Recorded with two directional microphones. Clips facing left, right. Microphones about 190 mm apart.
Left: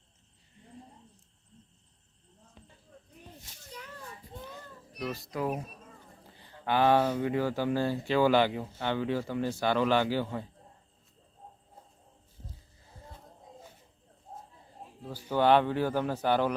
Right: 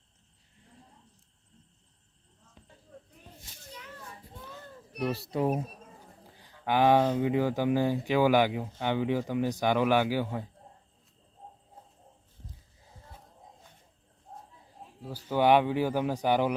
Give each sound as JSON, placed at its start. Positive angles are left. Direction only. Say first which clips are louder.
{"t": 4.9, "sound": "speech", "louder": "right 5 dB", "side_deg": -65}
{"t": 6.3, "sound": "a sound", "louder": "right 1 dB", "side_deg": -10}
{"t": 7.2, "sound": "a man's voice", "louder": "right 2 dB", "side_deg": -15}
{"t": 15.3, "sound": "a man's voice", "louder": "right 1 dB", "side_deg": -10}